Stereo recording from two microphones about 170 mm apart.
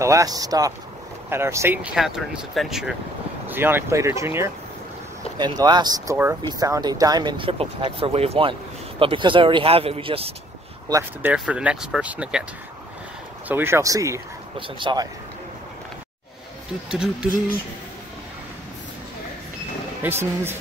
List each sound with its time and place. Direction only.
0.0 s speech: 20° right (ahead or behind); by 10.3 s 35° right (ahead or behind)
10.9 s speech: 15° right (ahead or behind)
11.3 s speech: 5° right (ahead or behind)
13.5 s speech: 15° right (ahead or behind)
16.9 s speech: 5° right (ahead or behind)
20.0 s speech: 15° right (ahead or behind)